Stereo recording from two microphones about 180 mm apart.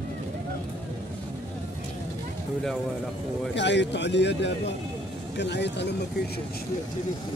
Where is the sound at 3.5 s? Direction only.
75° left (ahead or behind).